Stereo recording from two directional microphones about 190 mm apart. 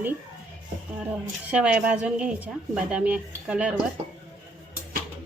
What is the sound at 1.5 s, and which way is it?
A woman's voice, 5° right (ahead or behind).